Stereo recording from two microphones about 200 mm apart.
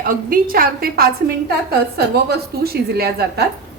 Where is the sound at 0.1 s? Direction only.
45° right (ahead or behind).